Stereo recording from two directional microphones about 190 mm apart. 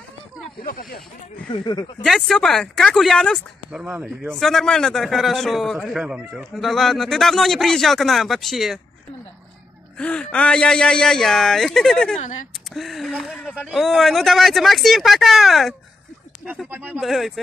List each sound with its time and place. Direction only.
0.7 s speech: 50° left (ahead or behind)
1.5 s speech: 20° left (ahead or behind)
2.0 s a man's voice: centre (ahead or behind)
3.8 s speech: 10° right (ahead or behind)
4.4 s a man's voice: centre (ahead or behind)
9.9 s a man's voice: 5° left (ahead or behind)
16.7 s a man's voice: 10° right (ahead or behind)